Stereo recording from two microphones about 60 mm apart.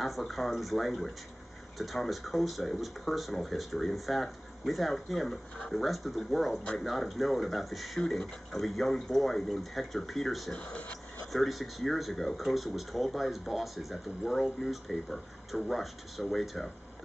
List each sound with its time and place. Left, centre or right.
0.0 s speech: centre
10.5 s speech: centre
11.3 s speech: centre